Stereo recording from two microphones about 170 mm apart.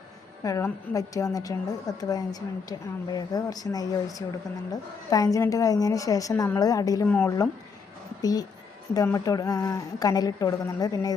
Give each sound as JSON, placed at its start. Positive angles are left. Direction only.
{"t": 0.4, "sound": "a woman's voice", "side_deg": 20}
{"t": 7.1, "sound": "speech", "side_deg": 10}
{"t": 8.2, "sound": "a woman's voice", "side_deg": 20}